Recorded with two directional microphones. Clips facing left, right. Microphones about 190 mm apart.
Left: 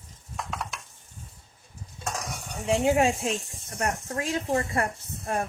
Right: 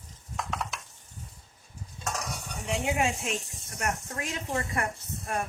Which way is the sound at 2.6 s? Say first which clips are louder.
Left 7 dB; 30° left (ahead or behind).